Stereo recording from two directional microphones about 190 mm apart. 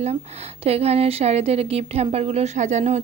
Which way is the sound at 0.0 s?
35° right (ahead or behind).